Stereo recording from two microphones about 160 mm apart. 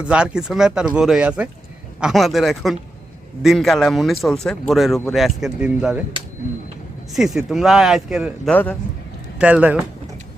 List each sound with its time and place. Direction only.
0.0 s a man's voice: 5° right (ahead or behind)
7.1 s a man's voice: centre (ahead or behind)